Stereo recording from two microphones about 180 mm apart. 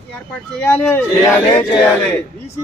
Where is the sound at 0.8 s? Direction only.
10° left (ahead or behind).